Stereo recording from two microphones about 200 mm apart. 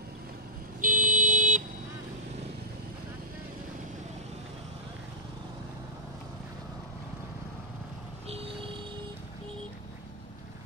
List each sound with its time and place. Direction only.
0.7 s vehicle: 40° right (ahead or behind)